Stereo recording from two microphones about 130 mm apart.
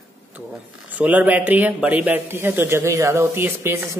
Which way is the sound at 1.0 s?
10° right (ahead or behind).